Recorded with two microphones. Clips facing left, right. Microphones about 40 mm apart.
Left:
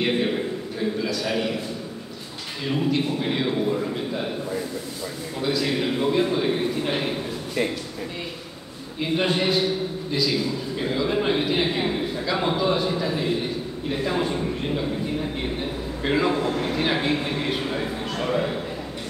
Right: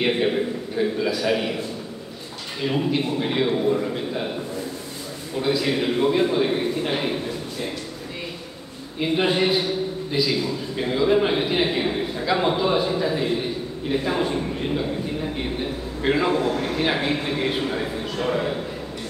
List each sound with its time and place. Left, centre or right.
0.0 s a man's voice: centre
2.7 s a man's voice: centre
5.4 s a man's voice: centre
9.1 s a man's voice: centre
16.0 s a man's voice: centre